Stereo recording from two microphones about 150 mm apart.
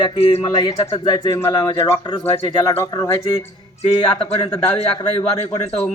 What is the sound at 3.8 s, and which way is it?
A man's voice, 40° left (ahead or behind).